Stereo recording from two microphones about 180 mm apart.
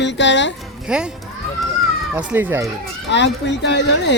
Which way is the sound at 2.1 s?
10° right (ahead or behind).